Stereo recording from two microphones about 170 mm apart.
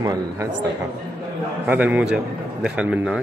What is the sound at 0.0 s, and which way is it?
Speech, 20° right (ahead or behind).